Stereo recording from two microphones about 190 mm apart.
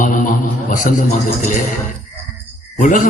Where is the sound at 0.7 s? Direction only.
45° left (ahead or behind).